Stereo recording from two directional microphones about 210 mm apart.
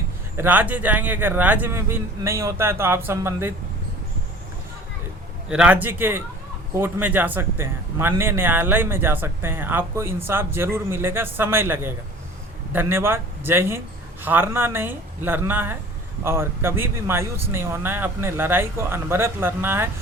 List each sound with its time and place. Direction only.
0.3 s speech: 10° right (ahead or behind)
5.5 s speech: 5° right (ahead or behind)